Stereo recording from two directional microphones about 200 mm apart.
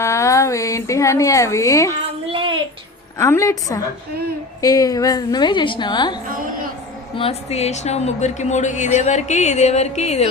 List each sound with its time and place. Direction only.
0.0 s a woman's voice: 15° left (ahead or behind)
2.3 s a sound: 25° right (ahead or behind)
3.2 s a woman's voice: 15° left (ahead or behind)
6.2 s a woman's voice: 45° right (ahead or behind)
7.2 s a woman's voice: 30° left (ahead or behind)